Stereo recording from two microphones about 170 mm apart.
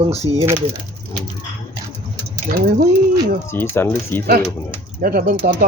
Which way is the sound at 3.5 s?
10° left (ahead or behind).